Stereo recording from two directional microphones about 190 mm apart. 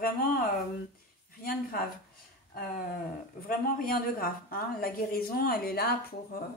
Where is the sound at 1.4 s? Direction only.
50° left (ahead or behind).